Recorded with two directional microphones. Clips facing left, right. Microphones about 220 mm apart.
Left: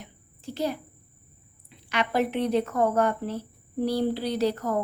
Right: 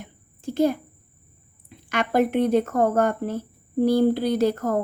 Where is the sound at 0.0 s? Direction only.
50° right (ahead or behind).